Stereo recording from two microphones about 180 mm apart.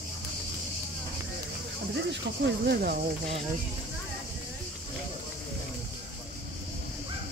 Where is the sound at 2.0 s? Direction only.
75° right (ahead or behind); by 3.0 s 55° right (ahead or behind).